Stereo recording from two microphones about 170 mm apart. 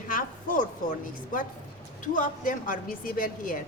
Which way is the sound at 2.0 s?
50° left (ahead or behind).